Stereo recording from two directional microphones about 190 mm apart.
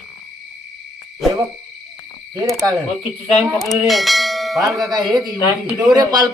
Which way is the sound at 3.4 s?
Centre (ahead or behind).